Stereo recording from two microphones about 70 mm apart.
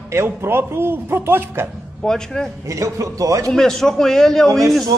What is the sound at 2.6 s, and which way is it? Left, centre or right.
Speech, right.